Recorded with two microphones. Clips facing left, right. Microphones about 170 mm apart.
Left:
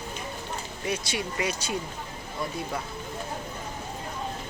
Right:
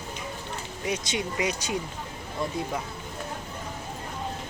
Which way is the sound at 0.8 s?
20° right (ahead or behind).